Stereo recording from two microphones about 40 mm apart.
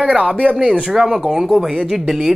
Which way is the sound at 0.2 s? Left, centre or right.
Right.